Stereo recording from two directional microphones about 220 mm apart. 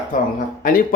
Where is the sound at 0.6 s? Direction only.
40° left (ahead or behind).